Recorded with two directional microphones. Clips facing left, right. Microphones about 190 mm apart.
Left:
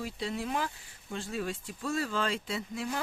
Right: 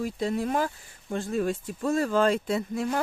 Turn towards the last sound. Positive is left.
turn(degrees=-50)  # may be behind; listen again after turning